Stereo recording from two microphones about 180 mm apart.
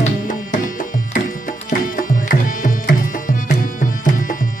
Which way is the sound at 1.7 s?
50° left (ahead or behind).